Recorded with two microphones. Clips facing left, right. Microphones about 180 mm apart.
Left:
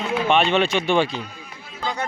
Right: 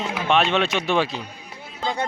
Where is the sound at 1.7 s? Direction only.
25° right (ahead or behind).